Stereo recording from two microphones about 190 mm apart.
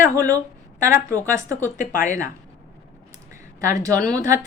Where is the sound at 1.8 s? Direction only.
45° left (ahead or behind).